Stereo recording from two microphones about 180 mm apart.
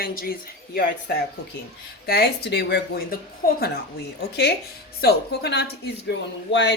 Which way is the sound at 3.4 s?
50° left (ahead or behind).